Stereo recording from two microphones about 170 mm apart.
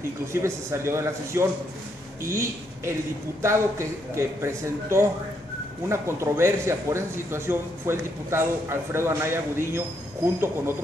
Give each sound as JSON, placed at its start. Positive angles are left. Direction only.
{"t": 0.3, "sound": "a woman's voice", "side_deg": -15}